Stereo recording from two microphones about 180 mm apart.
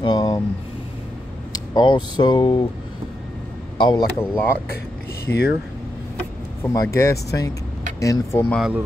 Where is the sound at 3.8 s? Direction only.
25° left (ahead or behind).